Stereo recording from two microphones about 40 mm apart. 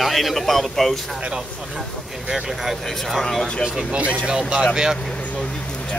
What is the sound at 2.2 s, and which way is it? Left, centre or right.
Speech, centre.